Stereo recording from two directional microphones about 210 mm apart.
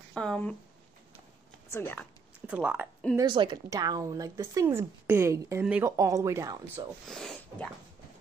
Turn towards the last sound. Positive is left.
turn(degrees=0)  # may be behind; listen again after turning